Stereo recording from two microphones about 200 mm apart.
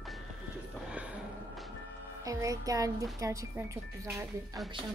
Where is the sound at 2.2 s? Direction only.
15° right (ahead or behind).